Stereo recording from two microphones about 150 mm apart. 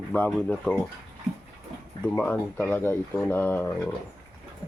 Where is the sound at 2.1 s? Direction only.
10° left (ahead or behind).